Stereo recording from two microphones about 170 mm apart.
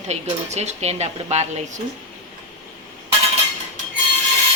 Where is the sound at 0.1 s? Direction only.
40° right (ahead or behind).